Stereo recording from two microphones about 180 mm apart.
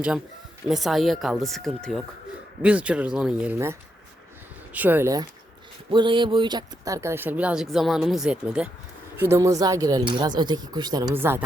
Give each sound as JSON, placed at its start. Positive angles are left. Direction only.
{"t": 0.7, "sound": "speech", "side_deg": 0}
{"t": 5.9, "sound": "speech", "side_deg": -25}
{"t": 11.1, "sound": "speech", "side_deg": -10}